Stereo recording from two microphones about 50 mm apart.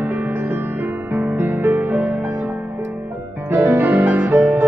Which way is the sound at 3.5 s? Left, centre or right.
Right.